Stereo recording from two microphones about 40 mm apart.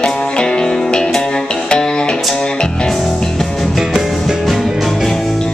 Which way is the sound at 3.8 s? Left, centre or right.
Centre.